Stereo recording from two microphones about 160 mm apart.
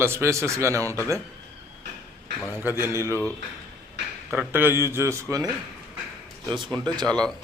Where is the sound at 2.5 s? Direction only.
15° right (ahead or behind).